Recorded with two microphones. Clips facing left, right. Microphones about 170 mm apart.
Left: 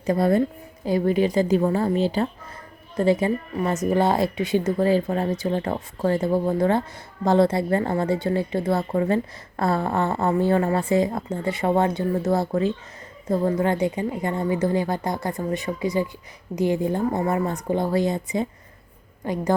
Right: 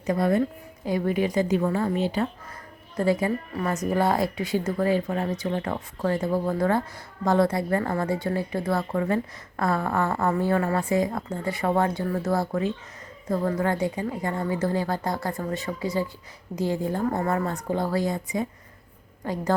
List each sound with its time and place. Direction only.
0.0 s a woman's voice: 35° left (ahead or behind)